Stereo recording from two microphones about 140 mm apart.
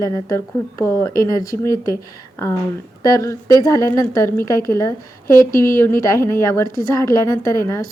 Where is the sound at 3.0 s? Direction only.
25° left (ahead or behind).